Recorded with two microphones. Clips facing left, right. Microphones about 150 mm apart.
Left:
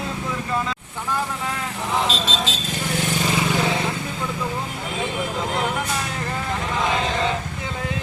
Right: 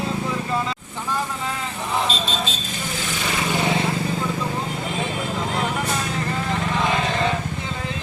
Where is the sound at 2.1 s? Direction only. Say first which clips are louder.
Left 1 dB; 90° left.